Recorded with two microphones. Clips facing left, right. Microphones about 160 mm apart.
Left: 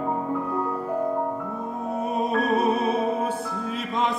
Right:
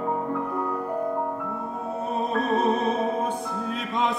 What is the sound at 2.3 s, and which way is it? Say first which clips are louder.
Music: even; 10° left (ahead or behind).